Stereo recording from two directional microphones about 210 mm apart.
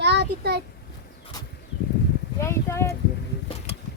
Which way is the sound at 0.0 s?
55° right (ahead or behind).